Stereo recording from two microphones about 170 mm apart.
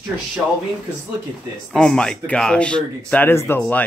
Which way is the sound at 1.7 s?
5° left (ahead or behind).